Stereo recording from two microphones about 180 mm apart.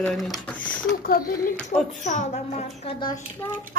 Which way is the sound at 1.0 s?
55° left (ahead or behind).